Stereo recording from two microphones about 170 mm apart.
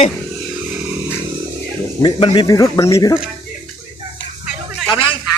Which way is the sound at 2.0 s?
30° left (ahead or behind).